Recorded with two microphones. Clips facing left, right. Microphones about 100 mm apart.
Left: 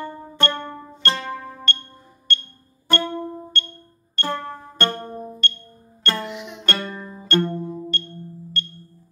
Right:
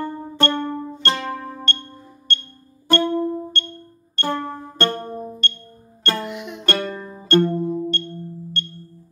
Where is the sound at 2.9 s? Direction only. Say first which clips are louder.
Right 6 dB; 25° right (ahead or behind).